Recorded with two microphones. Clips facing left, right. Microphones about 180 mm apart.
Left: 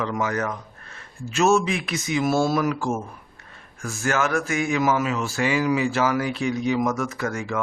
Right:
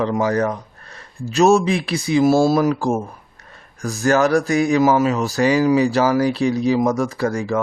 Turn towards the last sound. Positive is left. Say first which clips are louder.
# right 7 dB
turn(degrees=-35)  # may be behind; listen again after turning